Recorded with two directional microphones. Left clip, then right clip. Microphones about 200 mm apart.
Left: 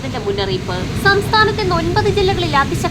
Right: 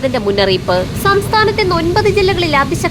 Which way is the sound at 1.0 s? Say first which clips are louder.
Left 1 dB; 20° right (ahead or behind).